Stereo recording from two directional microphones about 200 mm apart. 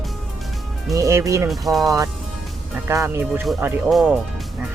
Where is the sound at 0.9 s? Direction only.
15° right (ahead or behind).